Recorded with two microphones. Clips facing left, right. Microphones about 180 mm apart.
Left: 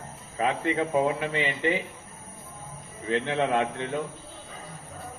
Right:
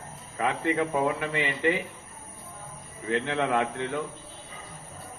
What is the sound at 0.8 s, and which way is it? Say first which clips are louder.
A man's voice: left 1 dB; 25° left (ahead or behind).